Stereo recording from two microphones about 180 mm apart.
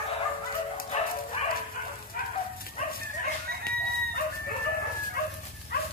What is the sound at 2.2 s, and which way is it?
Bow-wow, 55° left (ahead or behind).